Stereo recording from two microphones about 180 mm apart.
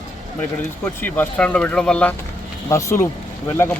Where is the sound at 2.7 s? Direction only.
15° left (ahead or behind).